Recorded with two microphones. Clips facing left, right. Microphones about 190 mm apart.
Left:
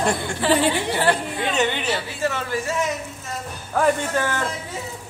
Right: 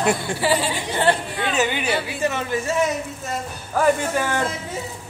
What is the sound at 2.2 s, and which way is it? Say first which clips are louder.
Speech: right 1 dB; 20° right (ahead or behind).